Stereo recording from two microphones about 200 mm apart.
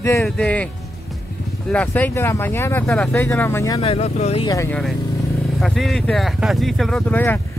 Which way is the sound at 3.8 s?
30° left (ahead or behind).